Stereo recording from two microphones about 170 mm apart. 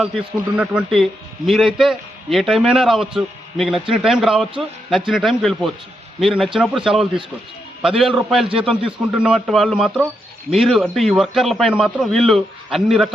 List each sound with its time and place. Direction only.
0.5 s a man's voice: 5° right (ahead or behind)